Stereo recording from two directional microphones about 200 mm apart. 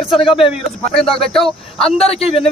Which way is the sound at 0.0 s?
Centre (ahead or behind).